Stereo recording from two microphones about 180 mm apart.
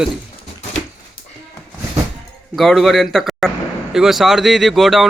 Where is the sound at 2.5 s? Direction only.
Centre (ahead or behind).